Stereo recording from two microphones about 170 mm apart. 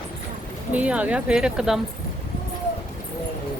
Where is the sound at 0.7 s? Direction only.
10° right (ahead or behind).